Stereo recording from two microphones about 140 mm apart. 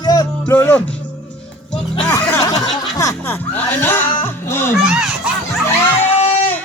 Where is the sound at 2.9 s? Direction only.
25° left (ahead or behind).